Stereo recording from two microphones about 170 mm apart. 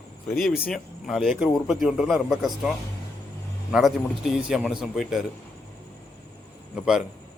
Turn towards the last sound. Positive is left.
turn(degrees=-5)  # may be behind; listen again after turning